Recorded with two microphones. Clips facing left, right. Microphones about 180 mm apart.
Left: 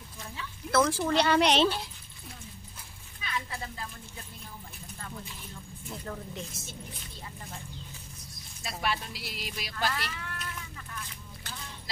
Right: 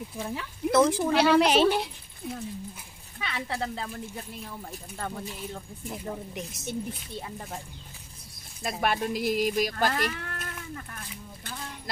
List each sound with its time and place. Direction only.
0.2 s speech: 65° right (ahead or behind)
0.7 s speech: 20° right (ahead or behind)
1.1 s a woman's voice: 5° right (ahead or behind)
3.2 s speech: 75° right (ahead or behind)
6.0 s a woman's voice: 20° right (ahead or behind)
8.6 s speech: 50° right (ahead or behind)